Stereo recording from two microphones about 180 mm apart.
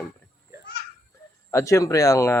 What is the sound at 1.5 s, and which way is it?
Speech, 15° left (ahead or behind).